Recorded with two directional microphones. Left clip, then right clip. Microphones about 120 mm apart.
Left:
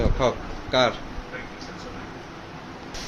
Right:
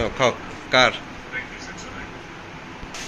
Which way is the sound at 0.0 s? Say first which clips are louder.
Right 3 dB; 5° left (ahead or behind).